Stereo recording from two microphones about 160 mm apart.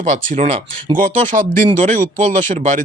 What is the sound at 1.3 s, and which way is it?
Speech, 50° right (ahead or behind).